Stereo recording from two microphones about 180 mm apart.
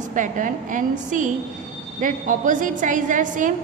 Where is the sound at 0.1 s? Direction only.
45° right (ahead or behind).